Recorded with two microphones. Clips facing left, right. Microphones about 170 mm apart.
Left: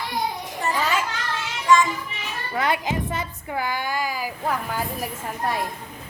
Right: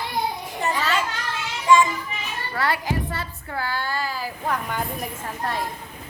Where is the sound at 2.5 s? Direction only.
20° left (ahead or behind).